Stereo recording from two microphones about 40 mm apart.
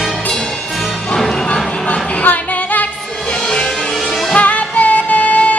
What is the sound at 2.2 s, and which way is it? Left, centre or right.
Female singing, left.